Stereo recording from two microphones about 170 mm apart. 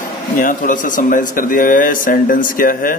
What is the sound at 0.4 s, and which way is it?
Speech, 50° left (ahead or behind).